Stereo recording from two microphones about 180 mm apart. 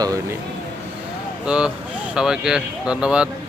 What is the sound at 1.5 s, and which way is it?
Speech, 5° right (ahead or behind).